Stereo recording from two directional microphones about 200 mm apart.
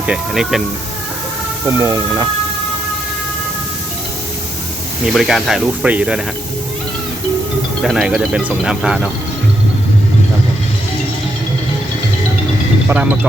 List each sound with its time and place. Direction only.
0.0 s speech: 5° right (ahead or behind)
1.6 s speech: 15° right (ahead or behind)
5.1 s speech: centre (ahead or behind)
7.8 s speech: centre (ahead or behind)
12.9 s speech: 5° right (ahead or behind)